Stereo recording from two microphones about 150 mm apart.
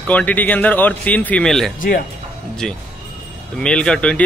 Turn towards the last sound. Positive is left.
turn(degrees=5)  # may be behind; listen again after turning